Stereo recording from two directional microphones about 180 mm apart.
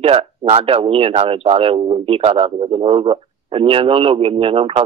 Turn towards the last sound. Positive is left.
turn(degrees=-30)  # may be behind; listen again after turning